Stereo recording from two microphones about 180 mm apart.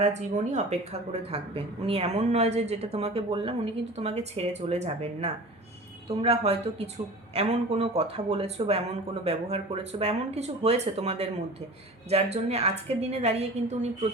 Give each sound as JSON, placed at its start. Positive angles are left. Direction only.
{"t": 0.0, "sound": "speech", "side_deg": -40}